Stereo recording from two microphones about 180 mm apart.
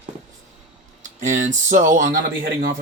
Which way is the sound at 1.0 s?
45° right (ahead or behind).